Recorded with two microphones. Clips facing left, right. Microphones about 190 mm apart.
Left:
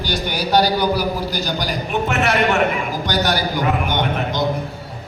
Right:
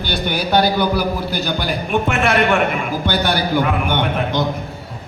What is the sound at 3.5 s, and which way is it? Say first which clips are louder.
Speech: right 2 dB; 55° right (ahead or behind).